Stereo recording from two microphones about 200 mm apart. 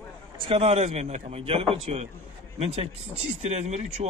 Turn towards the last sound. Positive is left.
turn(degrees=-35)  # may be behind; listen again after turning